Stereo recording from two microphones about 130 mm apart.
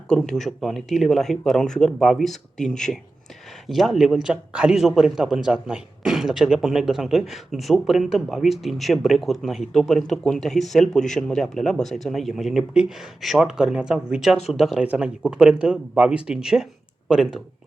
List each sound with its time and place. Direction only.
0.1 s a man's voice: 5° left (ahead or behind)